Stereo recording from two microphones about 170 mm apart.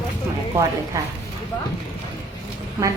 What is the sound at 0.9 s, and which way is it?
Speech, 20° right (ahead or behind).